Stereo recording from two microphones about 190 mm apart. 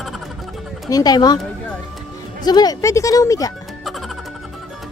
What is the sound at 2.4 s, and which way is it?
Speech, 20° left (ahead or behind).